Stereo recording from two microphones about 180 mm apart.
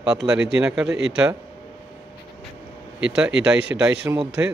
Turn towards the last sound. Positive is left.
turn(degrees=-5)  # may be behind; listen again after turning